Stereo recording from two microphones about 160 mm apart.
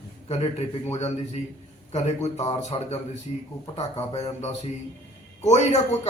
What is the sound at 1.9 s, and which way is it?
A man's voice, 45° left (ahead or behind).